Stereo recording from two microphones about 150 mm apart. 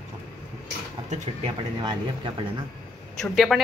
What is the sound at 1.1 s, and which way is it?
Speech, 50° right (ahead or behind).